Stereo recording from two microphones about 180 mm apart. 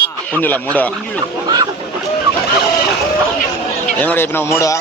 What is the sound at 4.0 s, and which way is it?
Fowl, 10° left (ahead or behind).